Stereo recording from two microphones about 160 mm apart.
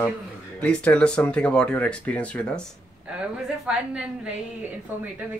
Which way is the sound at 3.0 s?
5° right (ahead or behind).